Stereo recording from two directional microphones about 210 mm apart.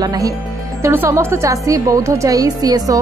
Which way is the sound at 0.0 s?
20° right (ahead or behind).